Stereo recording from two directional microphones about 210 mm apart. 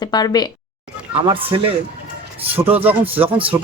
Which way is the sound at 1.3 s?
25° right (ahead or behind).